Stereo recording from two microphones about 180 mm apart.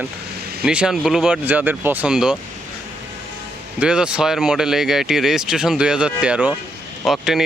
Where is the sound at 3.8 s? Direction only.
5° right (ahead or behind).